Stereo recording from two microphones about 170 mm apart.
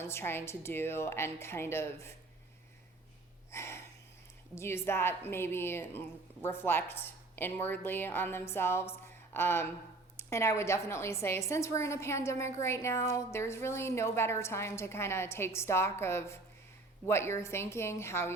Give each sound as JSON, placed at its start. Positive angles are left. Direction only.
{"t": 0.0, "sound": "a woman's voice", "side_deg": 15}
{"t": 3.5, "sound": "a sound", "side_deg": 15}
{"t": 4.5, "sound": "a woman's voice", "side_deg": 15}